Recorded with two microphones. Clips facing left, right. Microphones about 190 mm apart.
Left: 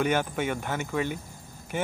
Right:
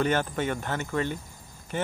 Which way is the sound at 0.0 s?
10° left (ahead or behind).